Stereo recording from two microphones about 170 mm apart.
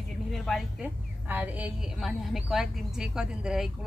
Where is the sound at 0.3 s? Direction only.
Centre (ahead or behind).